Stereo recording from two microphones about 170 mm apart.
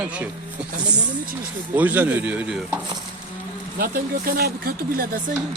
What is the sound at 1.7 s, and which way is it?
Speech, 10° right (ahead or behind).